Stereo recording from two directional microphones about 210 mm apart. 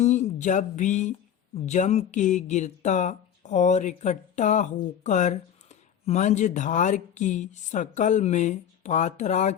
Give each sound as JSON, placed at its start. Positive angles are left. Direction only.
{"t": 0.0, "sound": "speech", "side_deg": 35}